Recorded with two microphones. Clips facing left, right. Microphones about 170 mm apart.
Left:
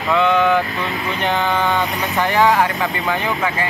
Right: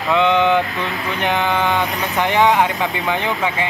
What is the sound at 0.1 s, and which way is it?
Speech, 20° right (ahead or behind).